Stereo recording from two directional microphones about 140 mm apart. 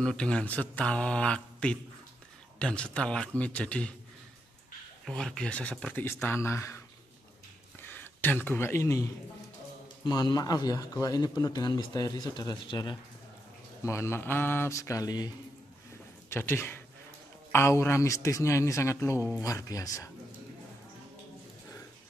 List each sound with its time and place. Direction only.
0.0 s speech: 5° left (ahead or behind)
5.0 s a man's voice: 5° left (ahead or behind); by 6.8 s 20° left (ahead or behind)
7.8 s speech: 15° left (ahead or behind)
10.0 s a man's voice: 30° left (ahead or behind)
13.8 s a man's voice: 20° left (ahead or behind)
16.3 s a man's voice: 15° left (ahead or behind)